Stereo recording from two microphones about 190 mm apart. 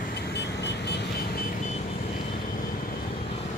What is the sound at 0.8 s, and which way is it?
Vehicle, 60° left (ahead or behind).